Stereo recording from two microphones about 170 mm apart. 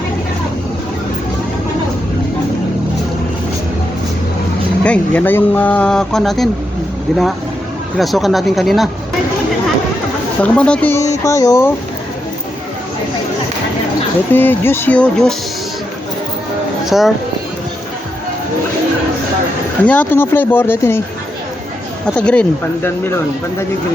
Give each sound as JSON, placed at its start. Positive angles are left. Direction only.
{"t": 4.8, "sound": "speech", "side_deg": 10}
{"t": 10.4, "sound": "speech", "side_deg": 5}
{"t": 14.3, "sound": "speech", "side_deg": 10}
{"t": 16.8, "sound": "speech", "side_deg": 0}
{"t": 19.8, "sound": "speech", "side_deg": 10}
{"t": 22.0, "sound": "speech", "side_deg": 5}